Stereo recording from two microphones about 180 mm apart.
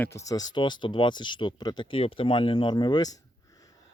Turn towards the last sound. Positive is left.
turn(degrees=20)  # may be behind; listen again after turning